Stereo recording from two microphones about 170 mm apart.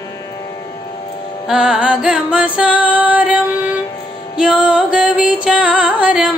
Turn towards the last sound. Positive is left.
turn(degrees=-10)  # may be behind; listen again after turning